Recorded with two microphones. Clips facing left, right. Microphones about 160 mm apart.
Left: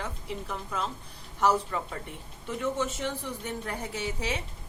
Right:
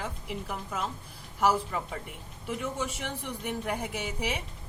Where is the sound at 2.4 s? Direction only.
10° right (ahead or behind).